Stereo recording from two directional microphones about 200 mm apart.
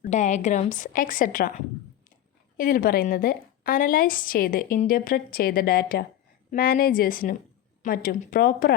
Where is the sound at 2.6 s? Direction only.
45° left (ahead or behind).